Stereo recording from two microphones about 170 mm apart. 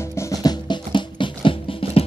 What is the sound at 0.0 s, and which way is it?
Music, 15° left (ahead or behind).